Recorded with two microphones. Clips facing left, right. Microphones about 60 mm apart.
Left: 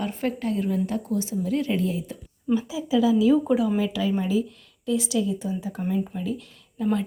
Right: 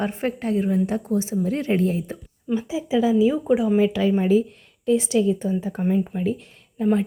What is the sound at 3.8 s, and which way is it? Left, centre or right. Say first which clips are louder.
A woman's voice: right 5 dB; right.